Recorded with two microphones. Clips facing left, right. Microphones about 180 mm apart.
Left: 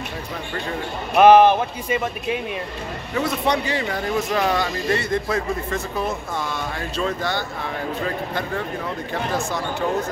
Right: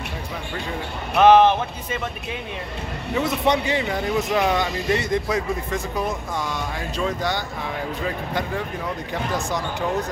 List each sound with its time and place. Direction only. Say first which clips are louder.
1.1 s speech: left 2 dB; 10° left (ahead or behind)
3.2 s speech: right 1 dB; 20° right (ahead or behind)